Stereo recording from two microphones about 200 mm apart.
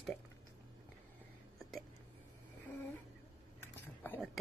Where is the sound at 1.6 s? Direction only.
Centre (ahead or behind).